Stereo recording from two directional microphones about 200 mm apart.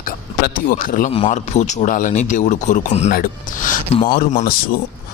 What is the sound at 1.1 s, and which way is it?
A man's voice, 30° left (ahead or behind).